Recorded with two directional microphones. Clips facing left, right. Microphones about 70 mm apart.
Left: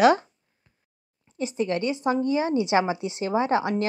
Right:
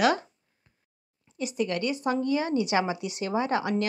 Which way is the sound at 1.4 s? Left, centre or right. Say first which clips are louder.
Left 3 dB; left.